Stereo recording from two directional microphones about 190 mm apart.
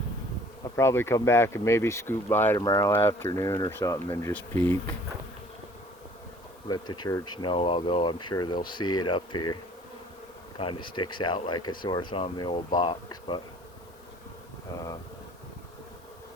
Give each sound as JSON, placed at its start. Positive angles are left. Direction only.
{"t": 0.8, "sound": "speech", "side_deg": 15}
{"t": 6.7, "sound": "speech", "side_deg": 20}
{"t": 10.6, "sound": "speech", "side_deg": 25}